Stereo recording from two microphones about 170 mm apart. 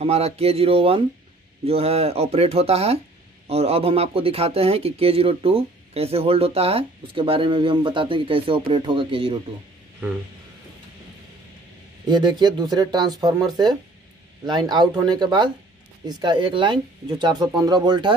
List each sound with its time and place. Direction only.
0.0 s speech: 35° right (ahead or behind)
12.1 s speech: 25° right (ahead or behind)
14.4 s speech: 25° right (ahead or behind)